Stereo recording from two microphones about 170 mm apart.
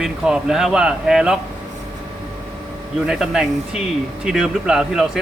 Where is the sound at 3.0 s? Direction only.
5° right (ahead or behind).